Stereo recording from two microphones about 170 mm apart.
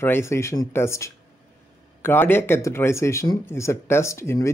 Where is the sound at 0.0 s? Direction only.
15° left (ahead or behind).